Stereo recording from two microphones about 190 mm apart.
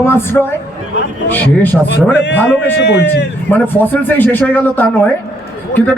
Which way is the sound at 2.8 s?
60° left (ahead or behind).